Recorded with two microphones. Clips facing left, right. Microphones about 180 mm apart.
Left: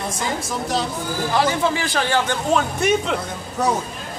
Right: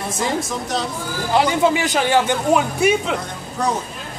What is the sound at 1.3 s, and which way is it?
Speech, 15° right (ahead or behind).